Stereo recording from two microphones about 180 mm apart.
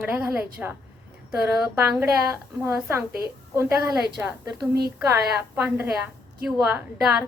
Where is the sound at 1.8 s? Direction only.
10° right (ahead or behind).